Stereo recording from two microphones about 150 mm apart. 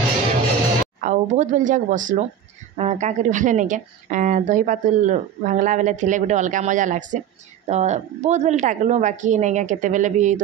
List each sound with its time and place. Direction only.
1.0 s a woman's voice: 55° right (ahead or behind)
2.7 s a woman's voice: 45° right (ahead or behind)